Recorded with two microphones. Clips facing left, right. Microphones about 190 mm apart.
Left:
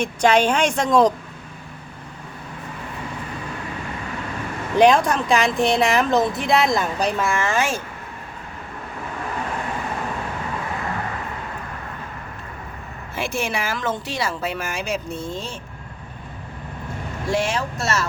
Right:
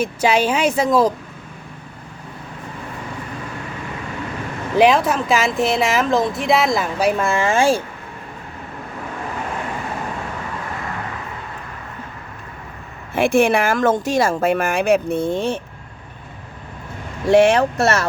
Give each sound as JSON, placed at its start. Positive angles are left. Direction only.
{"t": 0.0, "sound": "a woman's voice", "side_deg": -5}
{"t": 4.8, "sound": "a woman's voice", "side_deg": -5}
{"t": 7.3, "sound": "speech", "side_deg": -25}
{"t": 13.1, "sound": "speech", "side_deg": -55}
{"t": 17.3, "sound": "speech", "side_deg": -60}